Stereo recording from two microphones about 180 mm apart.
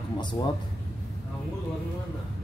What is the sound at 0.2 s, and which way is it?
Speech, 25° left (ahead or behind).